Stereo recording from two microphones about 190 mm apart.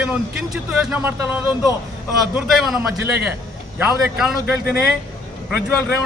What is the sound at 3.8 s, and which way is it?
Speech, 5° right (ahead or behind).